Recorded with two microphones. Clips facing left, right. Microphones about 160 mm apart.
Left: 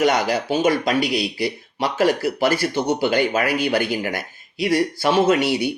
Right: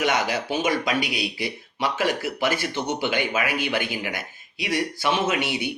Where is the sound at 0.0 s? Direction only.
35° left (ahead or behind).